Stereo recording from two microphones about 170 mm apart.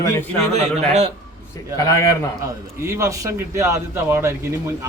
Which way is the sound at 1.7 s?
20° left (ahead or behind).